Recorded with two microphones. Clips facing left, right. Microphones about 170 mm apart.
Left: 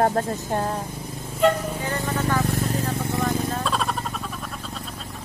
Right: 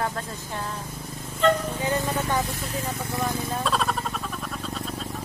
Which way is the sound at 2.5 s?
45° left (ahead or behind).